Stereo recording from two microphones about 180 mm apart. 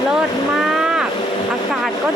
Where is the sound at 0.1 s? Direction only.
Centre (ahead or behind).